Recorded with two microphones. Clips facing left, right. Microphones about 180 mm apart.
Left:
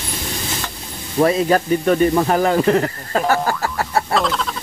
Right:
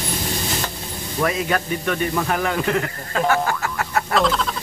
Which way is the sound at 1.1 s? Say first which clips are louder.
Left 7 dB; 30° left (ahead or behind).